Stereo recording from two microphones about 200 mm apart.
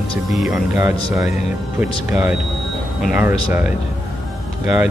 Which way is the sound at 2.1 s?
5° right (ahead or behind).